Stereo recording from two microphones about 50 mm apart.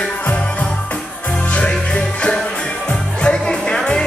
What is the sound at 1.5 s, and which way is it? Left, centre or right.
Music, left.